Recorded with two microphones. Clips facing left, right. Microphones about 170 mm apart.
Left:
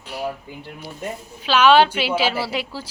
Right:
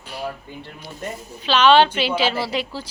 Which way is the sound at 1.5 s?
10° left (ahead or behind).